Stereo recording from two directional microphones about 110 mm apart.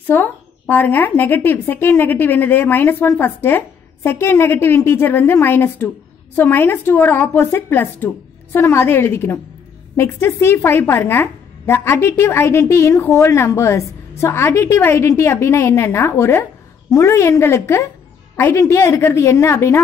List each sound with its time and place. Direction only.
0.0 s a woman's voice: 15° left (ahead or behind)